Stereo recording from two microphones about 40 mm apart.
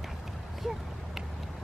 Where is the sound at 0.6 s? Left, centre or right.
Centre.